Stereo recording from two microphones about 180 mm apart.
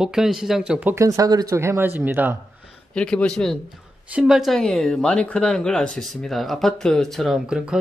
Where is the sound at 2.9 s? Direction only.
5° left (ahead or behind).